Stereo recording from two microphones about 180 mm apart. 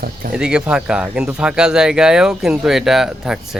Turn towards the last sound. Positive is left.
turn(degrees=-5)  # may be behind; listen again after turning